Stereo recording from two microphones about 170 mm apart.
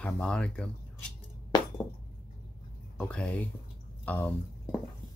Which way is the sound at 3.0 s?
5° left (ahead or behind).